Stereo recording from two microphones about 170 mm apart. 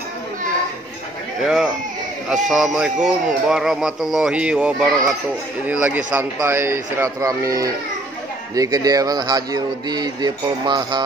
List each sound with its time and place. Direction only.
1.4 s speech: centre (ahead or behind); by 11.1 s 25° right (ahead or behind)